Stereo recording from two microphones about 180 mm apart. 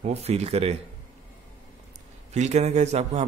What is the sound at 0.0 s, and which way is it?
Speech, 35° right (ahead or behind).